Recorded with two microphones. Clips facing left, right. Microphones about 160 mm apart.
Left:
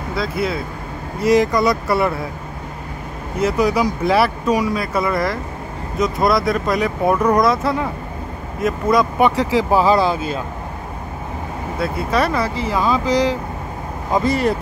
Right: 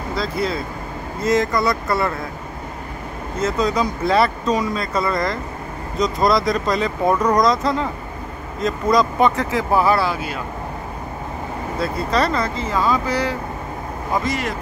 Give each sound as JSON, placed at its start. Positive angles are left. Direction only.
{"t": 0.1, "sound": "speech", "side_deg": 5}
{"t": 3.3, "sound": "speech", "side_deg": 10}
{"t": 11.8, "sound": "speech", "side_deg": 5}
{"t": 14.1, "sound": "speech", "side_deg": 30}